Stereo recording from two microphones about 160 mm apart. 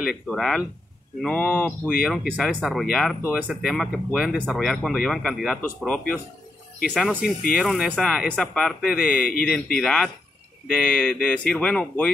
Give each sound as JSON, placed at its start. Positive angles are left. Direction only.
{"t": 0.0, "sound": "speech", "side_deg": 0}
{"t": 6.9, "sound": "speech", "side_deg": -5}
{"t": 9.1, "sound": "a man's voice", "side_deg": 65}
{"t": 9.8, "sound": "speech", "side_deg": 0}